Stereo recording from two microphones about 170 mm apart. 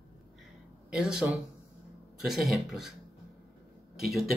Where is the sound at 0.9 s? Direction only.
5° right (ahead or behind).